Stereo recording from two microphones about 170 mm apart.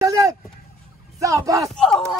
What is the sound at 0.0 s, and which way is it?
Vehicle, 20° right (ahead or behind).